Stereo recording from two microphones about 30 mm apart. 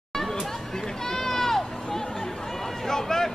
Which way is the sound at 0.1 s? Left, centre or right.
Centre.